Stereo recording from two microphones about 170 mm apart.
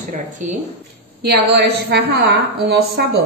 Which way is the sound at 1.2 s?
70° right (ahead or behind).